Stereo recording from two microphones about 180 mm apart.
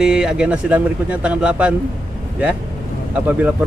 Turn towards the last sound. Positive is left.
turn(degrees=-10)  # may be behind; listen again after turning